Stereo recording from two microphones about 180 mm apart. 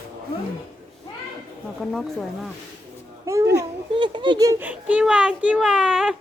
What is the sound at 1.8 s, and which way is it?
Speech, centre (ahead or behind).